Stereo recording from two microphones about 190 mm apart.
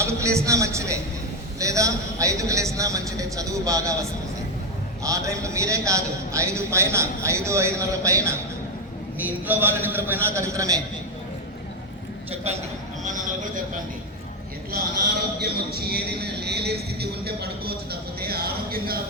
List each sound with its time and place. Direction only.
0.0 s a man's voice: 15° right (ahead or behind)
5.0 s a man's voice: 15° right (ahead or behind)
13.1 s a man's voice: 40° right (ahead or behind)
15.4 s music: 55° right (ahead or behind)